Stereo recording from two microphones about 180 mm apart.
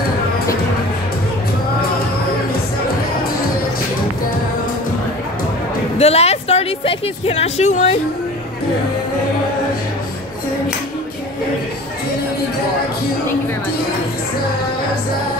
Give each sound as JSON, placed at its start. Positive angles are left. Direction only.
{"t": 5.9, "sound": "a woman's voice", "side_deg": 35}